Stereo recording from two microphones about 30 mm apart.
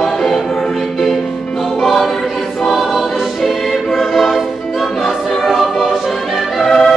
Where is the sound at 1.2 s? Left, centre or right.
Left.